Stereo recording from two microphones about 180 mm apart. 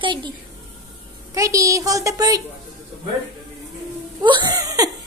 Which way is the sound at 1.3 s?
20° right (ahead or behind).